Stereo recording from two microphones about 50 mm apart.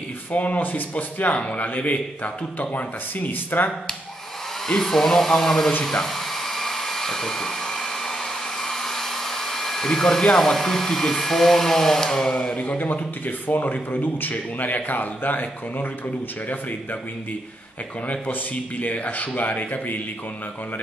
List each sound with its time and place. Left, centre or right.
0.3 s speech: left
2.7 s speech: left
4.6 s speech: centre
5.9 s hair dryer: centre
12.3 s speech: left
18.0 s speech: left